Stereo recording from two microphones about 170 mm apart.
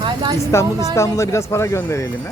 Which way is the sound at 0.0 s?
25° right (ahead or behind).